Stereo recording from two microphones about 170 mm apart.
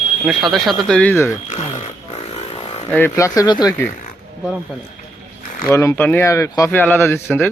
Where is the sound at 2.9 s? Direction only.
15° left (ahead or behind).